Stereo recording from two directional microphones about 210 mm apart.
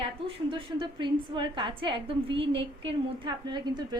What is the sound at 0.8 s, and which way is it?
A woman's voice, 20° right (ahead or behind).